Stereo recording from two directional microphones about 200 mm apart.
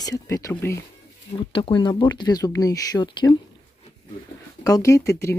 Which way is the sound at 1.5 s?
25° left (ahead or behind).